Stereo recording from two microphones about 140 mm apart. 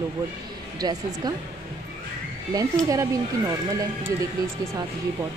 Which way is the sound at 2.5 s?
25° right (ahead or behind).